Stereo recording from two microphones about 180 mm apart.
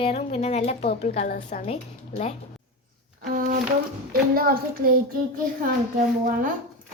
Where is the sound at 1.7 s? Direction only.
35° left (ahead or behind).